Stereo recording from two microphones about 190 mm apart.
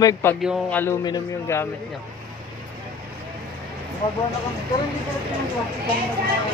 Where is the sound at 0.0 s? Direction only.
15° left (ahead or behind).